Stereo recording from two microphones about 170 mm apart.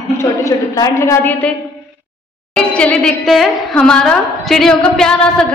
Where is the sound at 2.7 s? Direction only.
5° left (ahead or behind).